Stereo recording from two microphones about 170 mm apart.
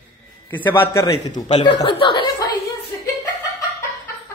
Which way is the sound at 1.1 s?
30° left (ahead or behind).